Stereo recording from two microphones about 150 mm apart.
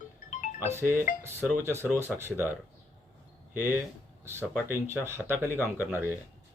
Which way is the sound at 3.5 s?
10° right (ahead or behind).